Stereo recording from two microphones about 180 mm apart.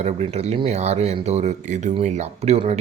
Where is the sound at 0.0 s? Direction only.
35° right (ahead or behind).